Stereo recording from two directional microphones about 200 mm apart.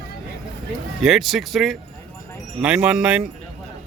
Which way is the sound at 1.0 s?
Centre (ahead or behind).